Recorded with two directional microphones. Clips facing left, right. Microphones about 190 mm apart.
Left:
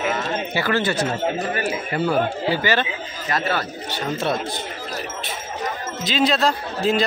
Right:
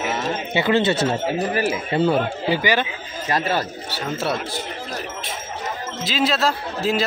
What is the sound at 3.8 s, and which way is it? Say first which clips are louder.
Speech: left 1 dB; 5° right (ahead or behind).